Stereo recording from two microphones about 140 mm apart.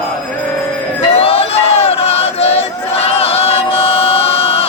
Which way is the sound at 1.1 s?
45° left (ahead or behind).